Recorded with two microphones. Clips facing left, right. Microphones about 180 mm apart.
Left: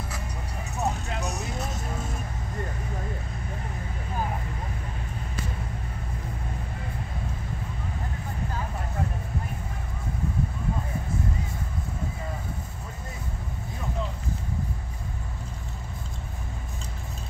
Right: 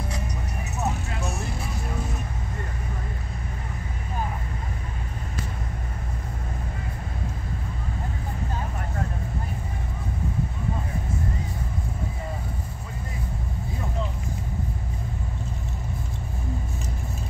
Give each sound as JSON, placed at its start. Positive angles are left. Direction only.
{"t": 0.7, "sound": "music", "side_deg": 15}